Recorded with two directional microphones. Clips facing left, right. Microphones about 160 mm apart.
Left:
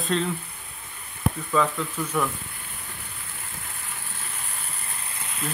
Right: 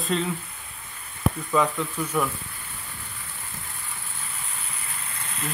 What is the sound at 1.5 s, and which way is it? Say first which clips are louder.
Speech: even; 10° right (ahead or behind).